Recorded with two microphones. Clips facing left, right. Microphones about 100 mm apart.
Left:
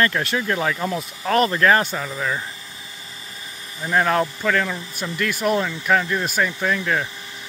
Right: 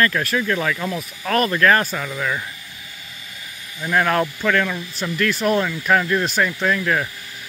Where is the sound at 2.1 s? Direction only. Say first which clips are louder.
Right 1 dB; 30° left (ahead or behind).